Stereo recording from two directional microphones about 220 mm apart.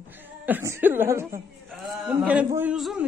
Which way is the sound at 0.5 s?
10° right (ahead or behind).